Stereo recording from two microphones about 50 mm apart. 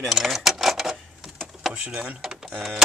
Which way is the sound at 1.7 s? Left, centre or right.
Right.